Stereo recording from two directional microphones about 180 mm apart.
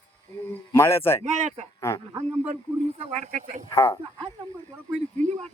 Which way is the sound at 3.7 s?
15° left (ahead or behind).